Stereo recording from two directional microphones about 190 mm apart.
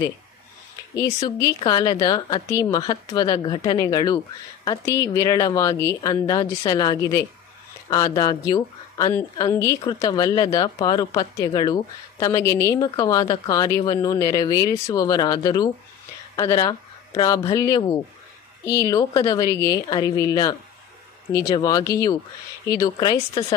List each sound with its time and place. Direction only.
0.9 s a woman's voice: 20° left (ahead or behind)